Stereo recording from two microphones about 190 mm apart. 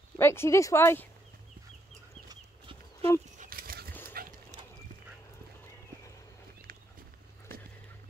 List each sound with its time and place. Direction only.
0.2 s speech: 15° left (ahead or behind)
2.2 s chicken: 25° right (ahead or behind)
3.3 s a sound: 50° right (ahead or behind)
4.1 s dog: 50° right (ahead or behind)